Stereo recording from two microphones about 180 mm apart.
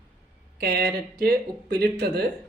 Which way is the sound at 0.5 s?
55° right (ahead or behind).